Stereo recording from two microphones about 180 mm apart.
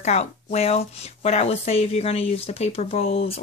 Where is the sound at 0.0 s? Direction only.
40° left (ahead or behind).